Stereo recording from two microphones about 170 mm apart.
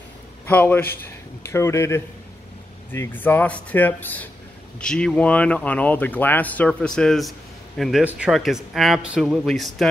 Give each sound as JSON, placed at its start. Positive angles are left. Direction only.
{"t": 0.5, "sound": "speech", "side_deg": 10}